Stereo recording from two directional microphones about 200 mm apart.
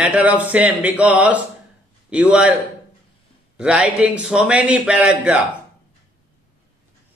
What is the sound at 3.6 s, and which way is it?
A man's voice, 5° right (ahead or behind).